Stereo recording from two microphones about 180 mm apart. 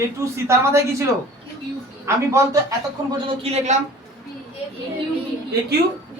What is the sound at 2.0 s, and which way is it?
A man's voice, 15° right (ahead or behind).